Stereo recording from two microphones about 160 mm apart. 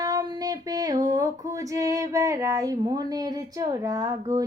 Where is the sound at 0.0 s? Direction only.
25° right (ahead or behind).